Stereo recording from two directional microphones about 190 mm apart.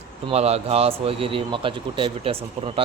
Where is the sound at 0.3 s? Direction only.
35° right (ahead or behind).